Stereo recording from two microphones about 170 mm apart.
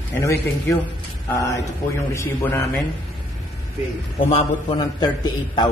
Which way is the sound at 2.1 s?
15° left (ahead or behind).